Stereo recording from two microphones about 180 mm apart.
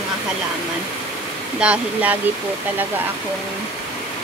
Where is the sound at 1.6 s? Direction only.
5° right (ahead or behind).